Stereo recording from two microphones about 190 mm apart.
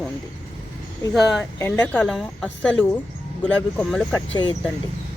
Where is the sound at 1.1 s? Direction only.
Centre (ahead or behind).